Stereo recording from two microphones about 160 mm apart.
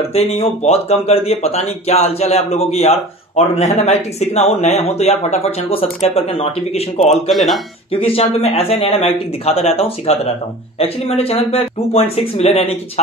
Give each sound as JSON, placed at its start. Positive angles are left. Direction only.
{"t": 0.1, "sound": "speech", "side_deg": 40}
{"t": 7.0, "sound": "speech", "side_deg": 0}
{"t": 7.9, "sound": "speech", "side_deg": 35}